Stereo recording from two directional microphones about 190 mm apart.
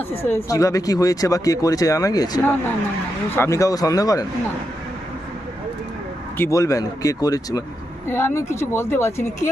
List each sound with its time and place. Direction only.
0.3 s speech: 15° left (ahead or behind)
6.3 s speech: 15° left (ahead or behind)